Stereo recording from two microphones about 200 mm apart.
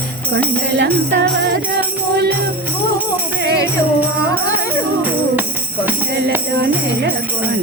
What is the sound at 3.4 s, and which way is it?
Music, 55° right (ahead or behind).